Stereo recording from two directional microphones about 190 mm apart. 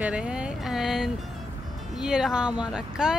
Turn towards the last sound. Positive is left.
turn(degrees=-5)  # may be behind; listen again after turning